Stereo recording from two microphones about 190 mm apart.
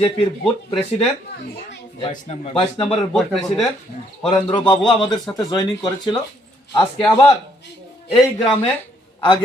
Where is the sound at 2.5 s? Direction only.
25° left (ahead or behind).